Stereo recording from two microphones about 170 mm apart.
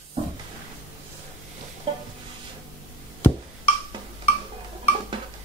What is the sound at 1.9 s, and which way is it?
Stir, 35° right (ahead or behind).